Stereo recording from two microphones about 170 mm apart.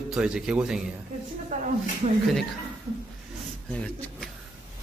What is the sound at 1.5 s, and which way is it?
Speech, 45° right (ahead or behind).